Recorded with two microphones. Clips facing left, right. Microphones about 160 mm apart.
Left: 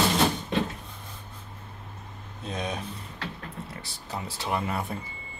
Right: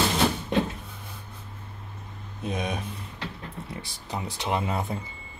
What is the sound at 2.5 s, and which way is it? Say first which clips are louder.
Speech: right 2 dB; 10° right (ahead or behind).